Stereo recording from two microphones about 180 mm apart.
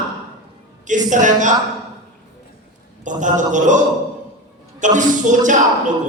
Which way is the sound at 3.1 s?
45° right (ahead or behind).